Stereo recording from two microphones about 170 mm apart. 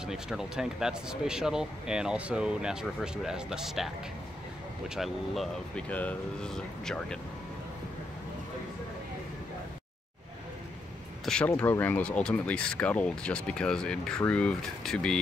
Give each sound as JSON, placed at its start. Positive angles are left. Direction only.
{"t": 0.0, "sound": "speech", "side_deg": -5}
{"t": 11.2, "sound": "speech", "side_deg": 5}